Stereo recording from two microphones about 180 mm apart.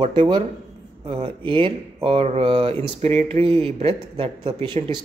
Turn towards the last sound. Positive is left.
turn(degrees=-25)  # may be behind; listen again after turning